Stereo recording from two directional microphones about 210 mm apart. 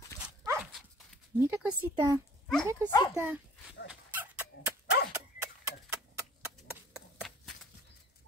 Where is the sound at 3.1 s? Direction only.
10° right (ahead or behind).